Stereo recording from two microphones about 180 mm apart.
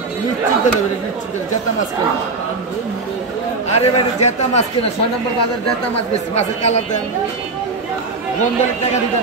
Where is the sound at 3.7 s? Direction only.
40° left (ahead or behind).